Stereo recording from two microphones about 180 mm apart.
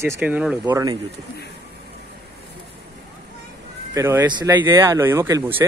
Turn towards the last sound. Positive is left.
turn(degrees=-15)  # may be behind; listen again after turning